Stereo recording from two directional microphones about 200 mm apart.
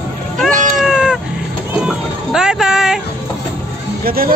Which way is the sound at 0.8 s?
5° right (ahead or behind).